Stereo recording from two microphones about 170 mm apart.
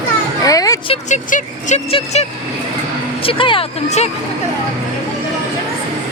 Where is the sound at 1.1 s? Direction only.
50° left (ahead or behind).